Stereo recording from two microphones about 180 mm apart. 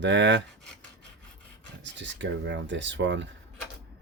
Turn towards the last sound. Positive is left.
turn(degrees=-90)